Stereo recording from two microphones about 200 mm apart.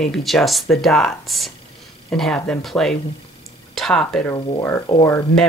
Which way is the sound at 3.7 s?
Centre (ahead or behind).